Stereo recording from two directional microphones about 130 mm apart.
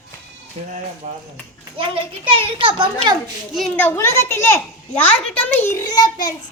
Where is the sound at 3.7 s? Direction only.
15° left (ahead or behind); by 6.3 s 30° left (ahead or behind).